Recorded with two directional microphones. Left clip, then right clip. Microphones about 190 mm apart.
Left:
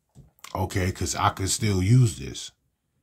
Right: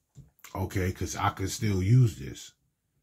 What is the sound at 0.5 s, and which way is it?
Speech, 30° left (ahead or behind).